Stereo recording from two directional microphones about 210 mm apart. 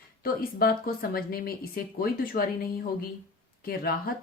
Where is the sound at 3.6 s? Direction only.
45° left (ahead or behind).